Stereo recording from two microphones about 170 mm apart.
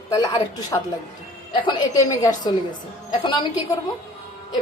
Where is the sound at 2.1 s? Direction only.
20° left (ahead or behind).